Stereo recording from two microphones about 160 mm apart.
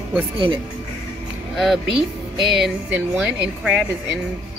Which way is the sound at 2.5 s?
5° right (ahead or behind).